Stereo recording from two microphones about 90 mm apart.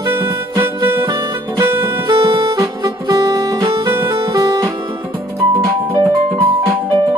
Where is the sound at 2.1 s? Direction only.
60° right (ahead or behind).